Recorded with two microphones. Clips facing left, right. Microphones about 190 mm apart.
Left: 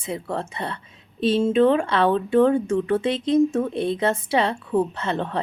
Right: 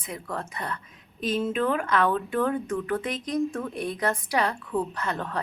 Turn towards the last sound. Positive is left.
turn(degrees=25)  # may be behind; listen again after turning